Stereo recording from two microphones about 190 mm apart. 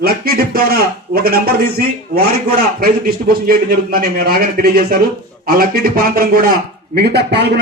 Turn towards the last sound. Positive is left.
turn(degrees=-60)  # may be behind; listen again after turning